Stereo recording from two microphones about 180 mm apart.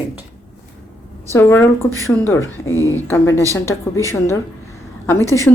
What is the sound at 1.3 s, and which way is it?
A woman's voice, 15° left (ahead or behind).